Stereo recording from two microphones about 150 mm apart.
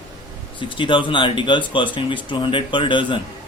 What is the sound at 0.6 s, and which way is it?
Speech, 35° left (ahead or behind).